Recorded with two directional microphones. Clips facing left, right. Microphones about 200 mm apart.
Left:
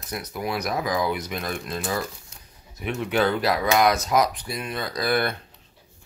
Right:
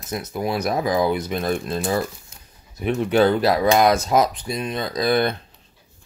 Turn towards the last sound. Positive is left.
turn(degrees=-20)  # may be behind; listen again after turning